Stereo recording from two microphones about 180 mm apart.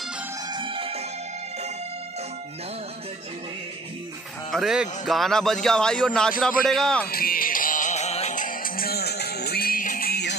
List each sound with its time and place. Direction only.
0.5 s music: 25° right (ahead or behind)
4.5 s speech: centre (ahead or behind)
7.1 s music: 55° left (ahead or behind)